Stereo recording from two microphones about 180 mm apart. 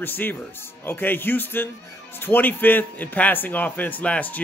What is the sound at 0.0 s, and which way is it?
Speech, 10° left (ahead or behind).